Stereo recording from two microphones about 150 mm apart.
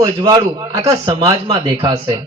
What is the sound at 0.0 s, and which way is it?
Speech, 30° right (ahead or behind).